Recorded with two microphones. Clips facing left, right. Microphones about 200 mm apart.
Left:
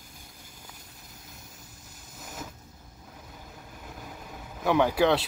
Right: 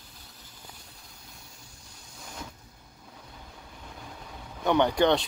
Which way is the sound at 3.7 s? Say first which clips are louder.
Left 2 dB; 5° left (ahead or behind).